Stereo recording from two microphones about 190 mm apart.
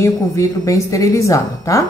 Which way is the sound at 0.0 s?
15° left (ahead or behind).